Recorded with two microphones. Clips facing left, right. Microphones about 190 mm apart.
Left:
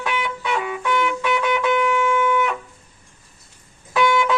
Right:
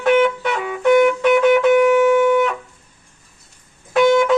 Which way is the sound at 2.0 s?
65° right (ahead or behind).